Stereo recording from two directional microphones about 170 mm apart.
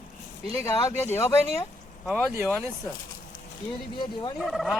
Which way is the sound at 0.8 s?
15° left (ahead or behind).